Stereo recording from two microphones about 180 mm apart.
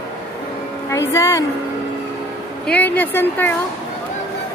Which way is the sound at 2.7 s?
10° left (ahead or behind).